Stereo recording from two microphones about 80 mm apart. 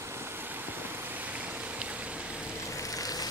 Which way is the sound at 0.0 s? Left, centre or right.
Right.